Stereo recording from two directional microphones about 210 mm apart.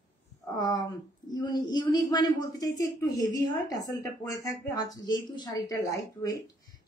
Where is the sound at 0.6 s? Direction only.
20° left (ahead or behind).